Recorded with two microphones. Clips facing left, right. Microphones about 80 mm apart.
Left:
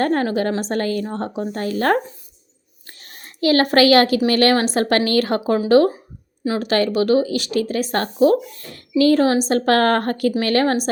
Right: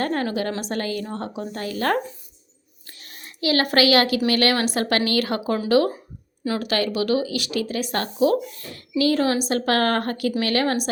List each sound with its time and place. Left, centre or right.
0.0 s speech: left
2.8 s a sound: left
4.3 s speech: left